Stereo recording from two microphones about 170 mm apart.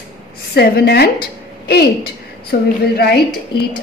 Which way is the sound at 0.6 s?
70° left (ahead or behind).